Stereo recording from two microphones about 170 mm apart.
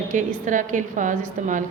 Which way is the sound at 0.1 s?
50° right (ahead or behind).